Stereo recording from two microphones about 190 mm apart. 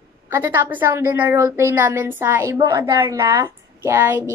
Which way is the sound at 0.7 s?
10° right (ahead or behind).